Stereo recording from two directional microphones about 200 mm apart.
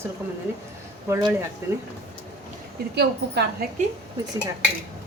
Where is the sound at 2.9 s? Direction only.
55° right (ahead or behind).